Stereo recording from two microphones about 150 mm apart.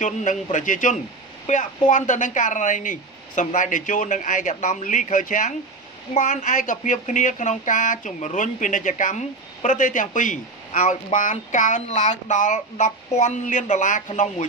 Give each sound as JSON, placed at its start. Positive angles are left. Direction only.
{"t": 0.0, "sound": "speech", "side_deg": 55}